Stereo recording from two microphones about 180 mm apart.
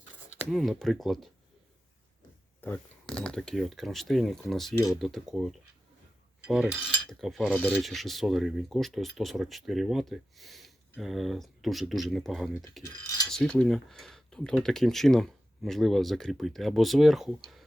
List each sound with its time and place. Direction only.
0.5 s speech: centre (ahead or behind)
2.6 s speech: 10° left (ahead or behind)
6.4 s cutlery: 5° right (ahead or behind)
7.5 s speech: 10° left (ahead or behind)
12.8 s pulleys: 20° left (ahead or behind)
13.3 s speech: centre (ahead or behind)